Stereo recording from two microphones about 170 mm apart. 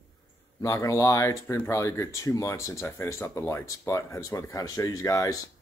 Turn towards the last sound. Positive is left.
turn(degrees=20)  # may be behind; listen again after turning